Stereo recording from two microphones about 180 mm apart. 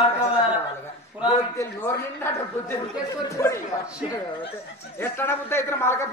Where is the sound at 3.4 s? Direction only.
20° left (ahead or behind).